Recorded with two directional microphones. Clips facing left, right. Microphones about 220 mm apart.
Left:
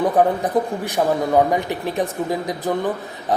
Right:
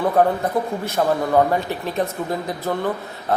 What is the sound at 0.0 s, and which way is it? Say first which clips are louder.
A man's voice: left 1 dB; 15° left (ahead or behind).